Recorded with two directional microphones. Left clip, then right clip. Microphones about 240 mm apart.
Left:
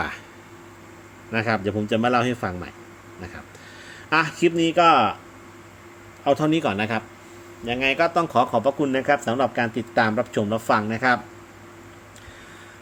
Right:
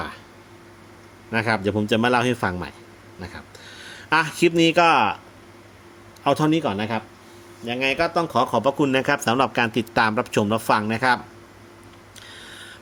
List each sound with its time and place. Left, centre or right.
1.3 s a man's voice: centre
6.2 s speech: right
6.5 s speech: centre